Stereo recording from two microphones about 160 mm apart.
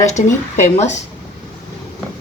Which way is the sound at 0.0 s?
45° left (ahead or behind).